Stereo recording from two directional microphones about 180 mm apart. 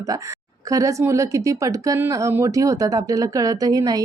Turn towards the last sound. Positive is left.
turn(degrees=-20)  # may be behind; listen again after turning